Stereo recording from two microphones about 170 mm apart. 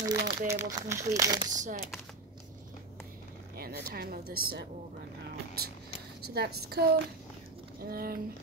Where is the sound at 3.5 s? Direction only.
65° right (ahead or behind).